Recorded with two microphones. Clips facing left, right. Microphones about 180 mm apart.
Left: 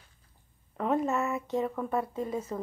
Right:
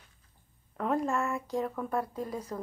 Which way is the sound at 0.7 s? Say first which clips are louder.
Left 2 dB; centre (ahead or behind).